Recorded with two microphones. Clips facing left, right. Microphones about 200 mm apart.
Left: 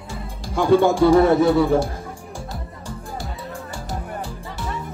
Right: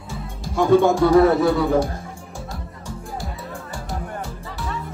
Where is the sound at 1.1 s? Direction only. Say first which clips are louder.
Left 1 dB; centre (ahead or behind).